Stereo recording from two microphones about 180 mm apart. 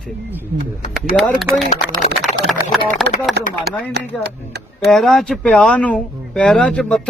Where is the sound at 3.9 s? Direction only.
70° right (ahead or behind).